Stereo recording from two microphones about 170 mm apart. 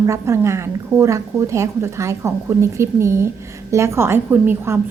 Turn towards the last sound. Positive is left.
turn(degrees=-15)  # may be behind; listen again after turning